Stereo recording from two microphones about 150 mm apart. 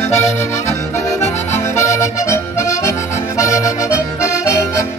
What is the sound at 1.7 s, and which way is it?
Accordion, 20° left (ahead or behind).